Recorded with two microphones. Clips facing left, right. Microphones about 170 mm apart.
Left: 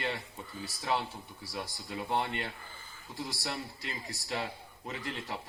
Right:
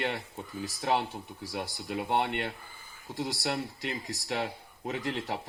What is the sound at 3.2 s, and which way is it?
Speech, 90° right.